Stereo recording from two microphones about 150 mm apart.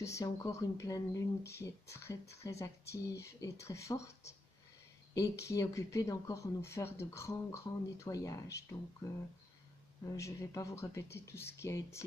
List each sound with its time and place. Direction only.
0.0 s speech: 20° left (ahead or behind)
5.1 s speech: 20° left (ahead or behind)
10.1 s speech: 20° left (ahead or behind)